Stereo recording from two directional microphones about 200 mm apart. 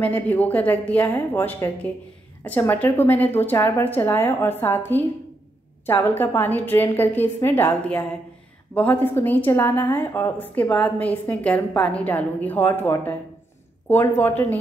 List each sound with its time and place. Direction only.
0.0 s a woman's voice: 10° left (ahead or behind)